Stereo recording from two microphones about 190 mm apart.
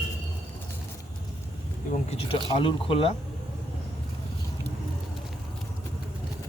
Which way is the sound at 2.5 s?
30° left (ahead or behind).